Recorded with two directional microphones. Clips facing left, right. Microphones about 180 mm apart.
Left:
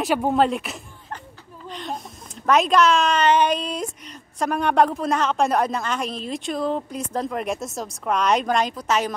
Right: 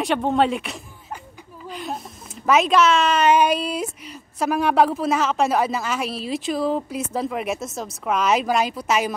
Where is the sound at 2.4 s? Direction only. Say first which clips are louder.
Even; 5° right (ahead or behind).